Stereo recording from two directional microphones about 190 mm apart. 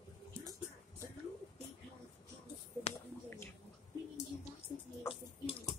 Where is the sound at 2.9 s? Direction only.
30° left (ahead or behind).